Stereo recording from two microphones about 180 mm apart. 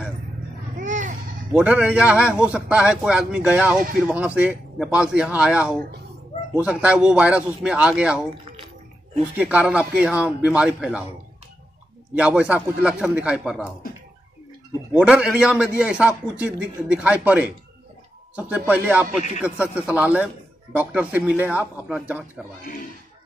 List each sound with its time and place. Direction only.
0.7 s a sound: 45° right (ahead or behind)
1.5 s a man's voice: 5° right (ahead or behind)
9.4 s a man's voice: 5° right (ahead or behind)
12.2 s a man's voice: 5° right (ahead or behind)
14.9 s a man's voice: 5° right (ahead or behind)